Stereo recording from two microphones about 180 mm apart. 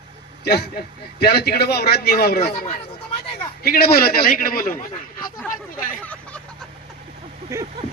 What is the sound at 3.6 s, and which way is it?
A man's voice, 55° left (ahead or behind).